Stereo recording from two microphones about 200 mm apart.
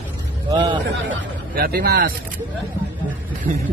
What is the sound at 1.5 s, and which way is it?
Speech, 50° right (ahead or behind).